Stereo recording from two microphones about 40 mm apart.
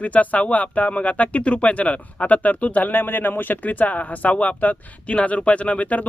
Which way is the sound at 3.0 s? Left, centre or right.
Left.